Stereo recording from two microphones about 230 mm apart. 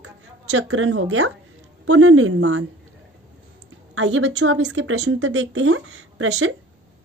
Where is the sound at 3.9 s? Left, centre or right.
Right.